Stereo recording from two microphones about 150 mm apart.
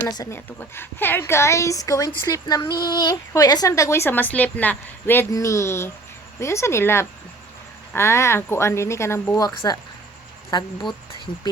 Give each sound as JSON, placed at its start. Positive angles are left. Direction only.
{"t": 0.1, "sound": "a woman's voice", "side_deg": 25}
{"t": 0.3, "sound": "a woman's voice", "side_deg": 15}